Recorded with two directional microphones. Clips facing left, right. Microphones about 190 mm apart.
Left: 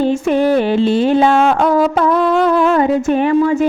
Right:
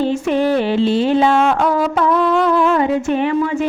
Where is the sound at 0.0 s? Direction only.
50° left (ahead or behind).